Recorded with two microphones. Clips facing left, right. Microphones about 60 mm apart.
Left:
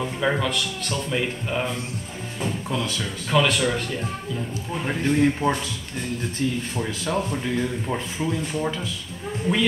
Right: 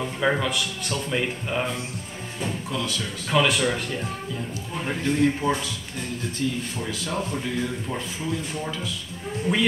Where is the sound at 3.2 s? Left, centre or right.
Centre.